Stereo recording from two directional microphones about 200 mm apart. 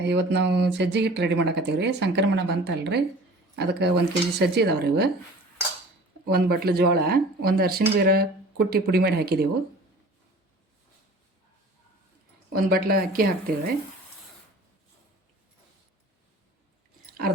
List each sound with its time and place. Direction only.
0.0 s speech: 60° right (ahead or behind)
6.2 s speech: 50° right (ahead or behind)
12.5 s speech: 50° right (ahead or behind)